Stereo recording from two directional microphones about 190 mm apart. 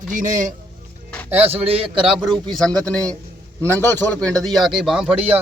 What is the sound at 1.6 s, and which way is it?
Speech, 30° right (ahead or behind).